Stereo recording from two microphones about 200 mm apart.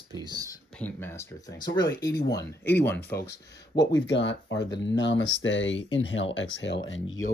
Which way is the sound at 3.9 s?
65° left (ahead or behind).